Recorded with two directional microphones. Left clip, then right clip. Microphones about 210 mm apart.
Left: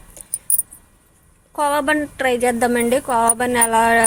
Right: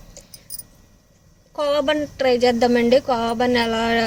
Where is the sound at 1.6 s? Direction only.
10° left (ahead or behind).